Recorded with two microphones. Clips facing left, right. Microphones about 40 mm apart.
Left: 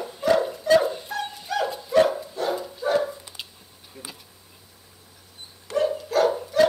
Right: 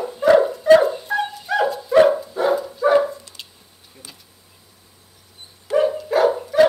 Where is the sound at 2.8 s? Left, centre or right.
Centre.